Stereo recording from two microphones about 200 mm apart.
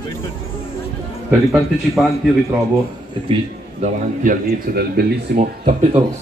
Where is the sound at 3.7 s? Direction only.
45° right (ahead or behind).